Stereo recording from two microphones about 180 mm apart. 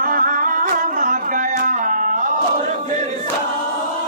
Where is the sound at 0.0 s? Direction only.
50° right (ahead or behind).